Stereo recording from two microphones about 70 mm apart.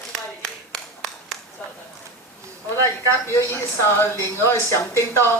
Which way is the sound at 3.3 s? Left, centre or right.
Left.